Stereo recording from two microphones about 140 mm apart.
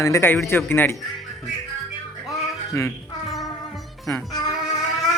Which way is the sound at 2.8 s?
20° left (ahead or behind).